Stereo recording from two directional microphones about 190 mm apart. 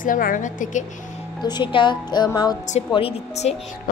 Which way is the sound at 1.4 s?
20° left (ahead or behind).